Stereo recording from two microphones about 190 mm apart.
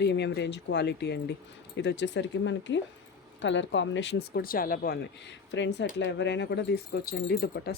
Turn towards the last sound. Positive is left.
turn(degrees=55)  # may be behind; listen again after turning